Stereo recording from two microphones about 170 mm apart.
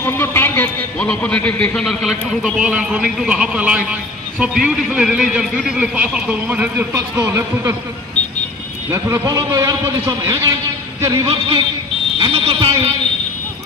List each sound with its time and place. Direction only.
0.0 s a man's voice: 15° left (ahead or behind); by 7.7 s 15° right (ahead or behind)
8.9 s a man's voice: 15° right (ahead or behind)
12.2 s a sound: 30° right (ahead or behind)